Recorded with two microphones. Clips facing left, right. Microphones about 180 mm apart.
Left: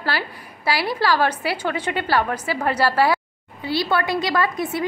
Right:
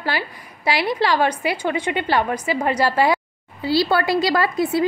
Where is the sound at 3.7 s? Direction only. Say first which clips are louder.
Right 3 dB; 35° right (ahead or behind).